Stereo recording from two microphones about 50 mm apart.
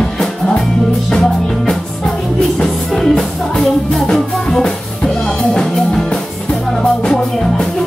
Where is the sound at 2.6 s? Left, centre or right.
Centre.